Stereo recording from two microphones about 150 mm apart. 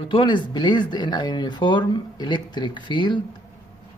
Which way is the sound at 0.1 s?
30° left (ahead or behind).